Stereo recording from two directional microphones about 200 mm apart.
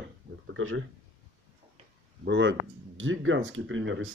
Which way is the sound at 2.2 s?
60° right (ahead or behind).